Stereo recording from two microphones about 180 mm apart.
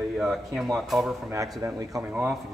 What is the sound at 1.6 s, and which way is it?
Speech, 15° right (ahead or behind).